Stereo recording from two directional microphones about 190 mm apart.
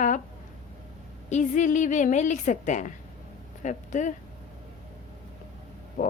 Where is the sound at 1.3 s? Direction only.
40° left (ahead or behind).